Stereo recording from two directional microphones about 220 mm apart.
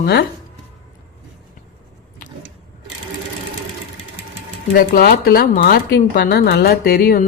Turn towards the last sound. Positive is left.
turn(degrees=45)  # may be behind; listen again after turning